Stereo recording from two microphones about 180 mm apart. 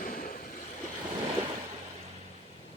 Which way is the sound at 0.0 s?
50° left (ahead or behind).